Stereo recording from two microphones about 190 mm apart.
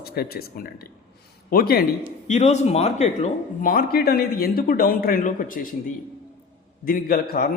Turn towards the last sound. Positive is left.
turn(degrees=50)  # may be behind; listen again after turning